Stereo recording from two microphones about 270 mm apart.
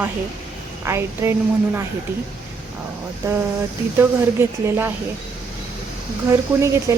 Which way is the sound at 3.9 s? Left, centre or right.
Centre.